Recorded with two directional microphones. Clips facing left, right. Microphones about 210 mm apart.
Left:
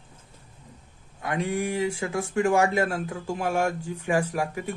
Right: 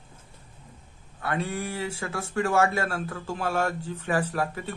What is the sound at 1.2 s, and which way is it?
Speech, 15° left (ahead or behind).